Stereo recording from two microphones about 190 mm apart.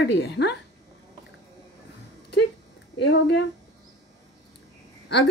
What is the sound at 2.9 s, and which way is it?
Speech, 65° left (ahead or behind).